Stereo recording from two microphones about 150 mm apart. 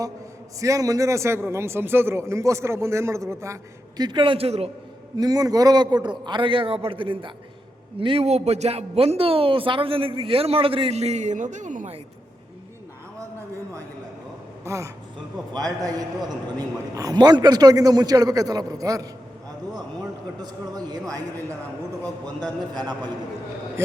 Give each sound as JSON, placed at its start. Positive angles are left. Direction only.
{"t": 0.6, "sound": "a man's voice", "side_deg": -20}
{"t": 5.1, "sound": "speech", "side_deg": -25}
{"t": 14.6, "sound": "a man's voice", "side_deg": -20}
{"t": 20.4, "sound": "a man's voice", "side_deg": -25}
{"t": 22.7, "sound": "a man's voice", "side_deg": -30}